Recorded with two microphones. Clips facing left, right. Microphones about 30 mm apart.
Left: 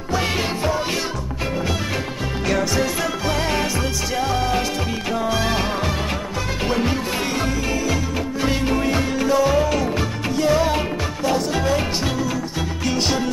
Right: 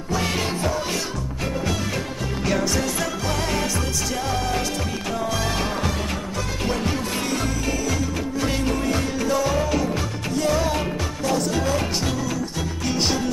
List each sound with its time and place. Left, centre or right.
0.1 s music: centre
2.4 s music: centre
2.7 s music: centre
7.8 s music: centre
12.8 s music: centre